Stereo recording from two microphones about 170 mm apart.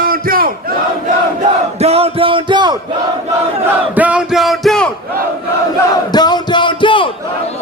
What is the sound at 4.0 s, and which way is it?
Music, 5° right (ahead or behind).